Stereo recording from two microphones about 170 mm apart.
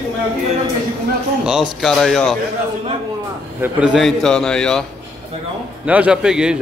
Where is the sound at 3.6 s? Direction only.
5° right (ahead or behind).